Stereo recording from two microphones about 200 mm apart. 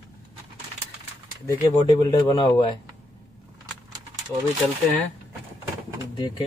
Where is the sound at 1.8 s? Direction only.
20° left (ahead or behind).